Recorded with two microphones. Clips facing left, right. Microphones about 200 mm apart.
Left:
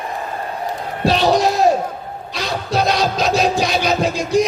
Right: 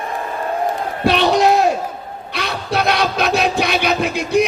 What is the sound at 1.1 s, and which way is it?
Music, 60° right (ahead or behind).